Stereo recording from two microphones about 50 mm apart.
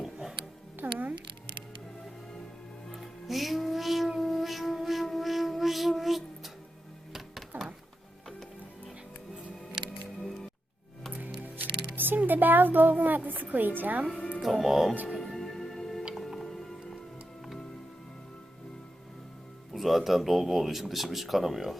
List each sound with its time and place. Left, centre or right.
0.0 s music: centre
0.8 s music: right
2.9 s music: centre
4.2 s a sound: centre
7.5 s music: right
10.2 s music: centre
11.5 s speech: right
14.4 s speech: centre
15.2 s music: centre
19.7 s speech: centre